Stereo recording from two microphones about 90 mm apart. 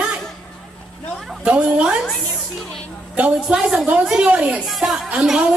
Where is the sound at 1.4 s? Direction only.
10° right (ahead or behind).